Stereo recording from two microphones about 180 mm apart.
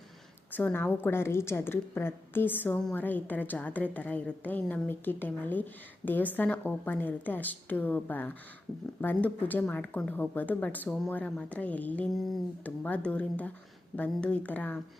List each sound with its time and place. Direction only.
0.5 s a woman's voice: 10° left (ahead or behind)